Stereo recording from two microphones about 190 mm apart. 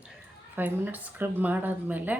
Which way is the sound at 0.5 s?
10° right (ahead or behind).